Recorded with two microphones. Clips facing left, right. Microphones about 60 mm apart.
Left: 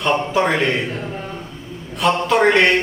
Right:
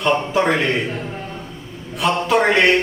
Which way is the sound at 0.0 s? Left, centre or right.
Centre.